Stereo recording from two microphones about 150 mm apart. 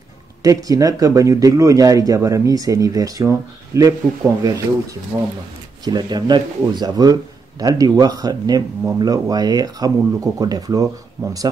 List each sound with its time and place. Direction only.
0.4 s speech: 25° right (ahead or behind)